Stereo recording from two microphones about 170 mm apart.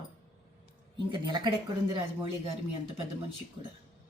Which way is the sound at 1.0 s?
25° right (ahead or behind).